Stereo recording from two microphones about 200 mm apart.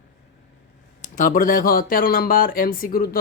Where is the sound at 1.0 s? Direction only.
40° left (ahead or behind).